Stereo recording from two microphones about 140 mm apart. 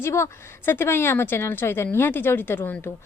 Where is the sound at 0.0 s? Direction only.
20° left (ahead or behind).